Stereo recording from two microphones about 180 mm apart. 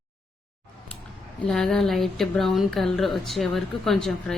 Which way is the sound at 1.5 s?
Centre (ahead or behind).